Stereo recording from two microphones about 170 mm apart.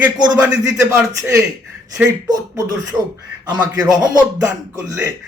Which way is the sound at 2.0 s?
20° right (ahead or behind).